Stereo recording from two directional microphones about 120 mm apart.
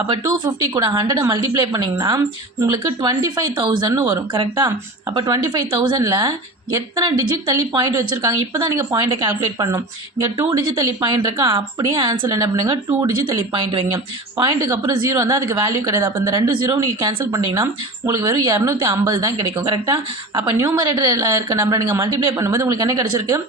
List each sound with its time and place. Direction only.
0.1 s a woman's voice: 40° right (ahead or behind)
1.6 s speech: 40° right (ahead or behind)
2.0 s a woman's voice: 30° right (ahead or behind)
2.8 s a woman's voice: 40° right (ahead or behind)
10.3 s a woman's voice: 40° right (ahead or behind)
12.3 s a woman's voice: 30° right (ahead or behind)
12.7 s speech: 45° right (ahead or behind)
14.6 s a woman's voice: 30° right (ahead or behind)
19.6 s a woman's voice: 40° right (ahead or behind)